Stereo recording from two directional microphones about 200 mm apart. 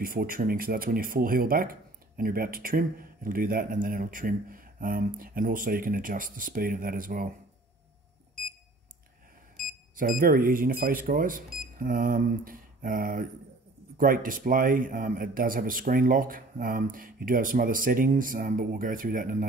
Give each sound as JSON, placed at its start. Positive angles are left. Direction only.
{"t": 0.0, "sound": "speech", "side_deg": -45}
{"t": 9.9, "sound": "speech", "side_deg": -45}